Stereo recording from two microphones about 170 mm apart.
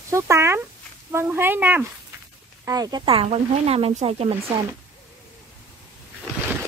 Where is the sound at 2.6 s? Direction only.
20° right (ahead or behind); by 4.4 s 35° right (ahead or behind).